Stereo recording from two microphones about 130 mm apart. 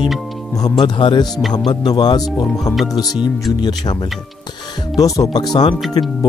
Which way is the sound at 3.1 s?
Centre (ahead or behind).